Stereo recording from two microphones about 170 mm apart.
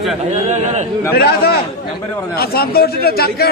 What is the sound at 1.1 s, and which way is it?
A man's voice, 65° left (ahead or behind).